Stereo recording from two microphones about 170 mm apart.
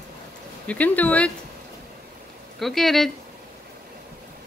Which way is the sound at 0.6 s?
10° left (ahead or behind).